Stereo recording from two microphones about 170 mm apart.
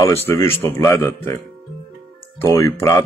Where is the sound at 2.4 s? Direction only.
15° left (ahead or behind).